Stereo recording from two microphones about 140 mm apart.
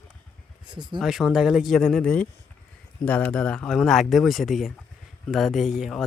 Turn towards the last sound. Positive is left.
turn(degrees=0)  # may be behind; listen again after turning